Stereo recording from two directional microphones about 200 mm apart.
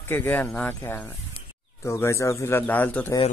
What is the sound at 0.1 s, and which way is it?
A man's voice, 10° left (ahead or behind).